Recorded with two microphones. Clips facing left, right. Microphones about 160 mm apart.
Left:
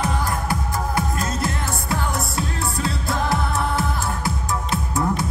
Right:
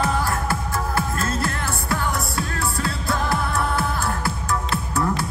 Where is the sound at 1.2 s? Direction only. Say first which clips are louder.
Even; 20° left (ahead or behind).